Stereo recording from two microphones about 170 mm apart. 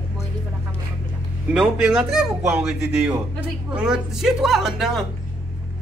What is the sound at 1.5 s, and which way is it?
A man's voice, 5° right (ahead or behind).